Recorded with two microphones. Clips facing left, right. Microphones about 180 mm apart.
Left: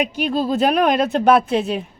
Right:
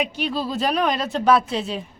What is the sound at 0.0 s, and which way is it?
A woman's voice, 50° left (ahead or behind).